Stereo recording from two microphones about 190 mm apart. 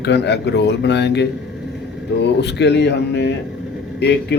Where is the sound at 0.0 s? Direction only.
65° left (ahead or behind).